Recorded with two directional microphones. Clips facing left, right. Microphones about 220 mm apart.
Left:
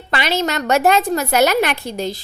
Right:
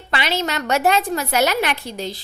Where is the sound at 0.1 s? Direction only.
45° left (ahead or behind).